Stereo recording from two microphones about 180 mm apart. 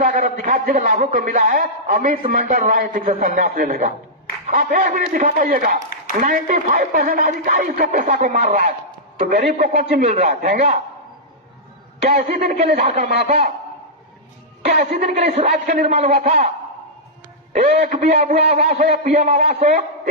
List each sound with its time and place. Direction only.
0.0 s a man's voice: 50° right (ahead or behind)
10.2 s a man's voice: 40° right (ahead or behind)
12.0 s a man's voice: 35° right (ahead or behind)
14.6 s a woman's voice: 40° right (ahead or behind)
17.5 s speech: 35° right (ahead or behind)
17.7 s a man's voice: 50° right (ahead or behind)